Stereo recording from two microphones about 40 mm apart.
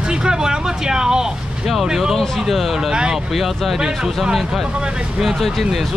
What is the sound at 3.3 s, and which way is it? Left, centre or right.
Speech, centre.